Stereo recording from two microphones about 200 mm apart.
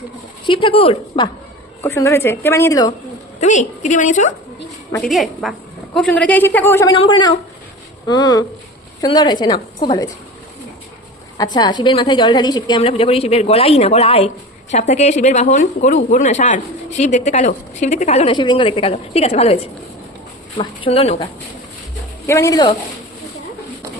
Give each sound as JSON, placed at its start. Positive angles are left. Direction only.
{"t": 0.4, "sound": "a woman's voice", "side_deg": 25}
{"t": 1.8, "sound": "a woman's voice", "side_deg": 15}
{"t": 3.4, "sound": "a woman's voice", "side_deg": 35}
{"t": 5.0, "sound": "a woman's voice", "side_deg": 0}
{"t": 6.9, "sound": "a woman's voice", "side_deg": 25}
{"t": 11.5, "sound": "a woman's voice", "side_deg": 20}
{"t": 22.3, "sound": "a woman's voice", "side_deg": 15}